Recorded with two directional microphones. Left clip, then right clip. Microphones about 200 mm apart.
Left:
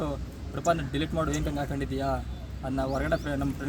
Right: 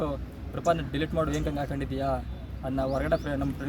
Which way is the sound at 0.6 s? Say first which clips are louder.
Even; 25° right (ahead or behind).